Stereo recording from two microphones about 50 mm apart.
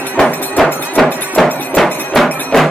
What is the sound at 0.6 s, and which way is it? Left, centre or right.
Music, centre.